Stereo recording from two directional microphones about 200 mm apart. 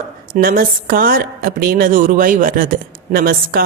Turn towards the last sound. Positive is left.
turn(degrees=-50)  # may be behind; listen again after turning